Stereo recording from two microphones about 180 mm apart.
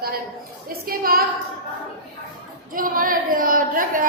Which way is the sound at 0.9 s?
55° right (ahead or behind).